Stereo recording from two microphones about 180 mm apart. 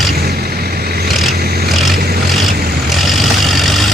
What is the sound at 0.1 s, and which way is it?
Vehicle, 60° right (ahead or behind).